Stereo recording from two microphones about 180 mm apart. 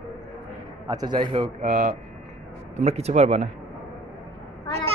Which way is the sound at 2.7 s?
35° right (ahead or behind).